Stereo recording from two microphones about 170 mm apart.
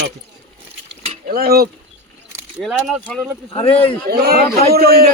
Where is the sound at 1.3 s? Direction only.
65° right (ahead or behind).